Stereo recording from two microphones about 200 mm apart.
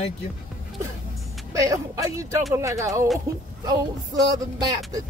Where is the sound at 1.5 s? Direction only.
15° right (ahead or behind).